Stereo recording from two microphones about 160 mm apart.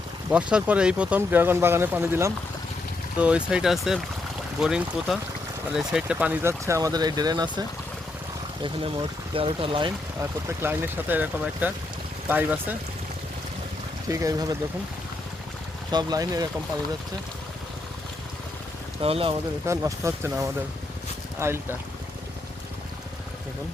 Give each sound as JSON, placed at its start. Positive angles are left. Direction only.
{"t": 0.5, "sound": "speech", "side_deg": -5}
{"t": 8.6, "sound": "speech", "side_deg": -30}
{"t": 10.2, "sound": "speech", "side_deg": -15}
{"t": 14.1, "sound": "speech", "side_deg": -20}
{"t": 15.9, "sound": "speech", "side_deg": -25}
{"t": 19.0, "sound": "speech", "side_deg": -35}
{"t": 19.6, "sound": "speech", "side_deg": -20}